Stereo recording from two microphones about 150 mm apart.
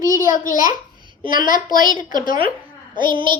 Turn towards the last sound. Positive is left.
turn(degrees=-35)  # may be behind; listen again after turning